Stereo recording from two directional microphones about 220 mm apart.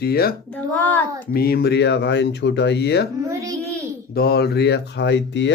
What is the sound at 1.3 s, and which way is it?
Speech, 45° left (ahead or behind).